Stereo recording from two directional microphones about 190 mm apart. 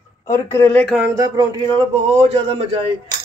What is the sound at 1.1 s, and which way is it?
A man's voice, 20° right (ahead or behind).